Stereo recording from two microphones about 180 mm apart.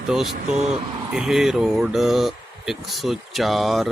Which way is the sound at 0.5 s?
35° right (ahead or behind).